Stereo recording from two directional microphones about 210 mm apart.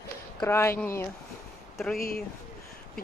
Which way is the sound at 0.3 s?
10° left (ahead or behind).